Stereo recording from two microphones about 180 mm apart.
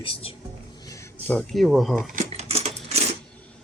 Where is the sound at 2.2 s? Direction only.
35° right (ahead or behind).